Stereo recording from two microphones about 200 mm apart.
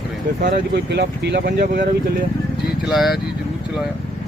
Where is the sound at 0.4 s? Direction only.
55° right (ahead or behind).